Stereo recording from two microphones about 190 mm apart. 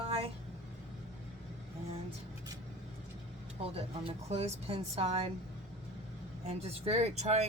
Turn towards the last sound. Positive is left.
turn(degrees=-35)  # may be behind; listen again after turning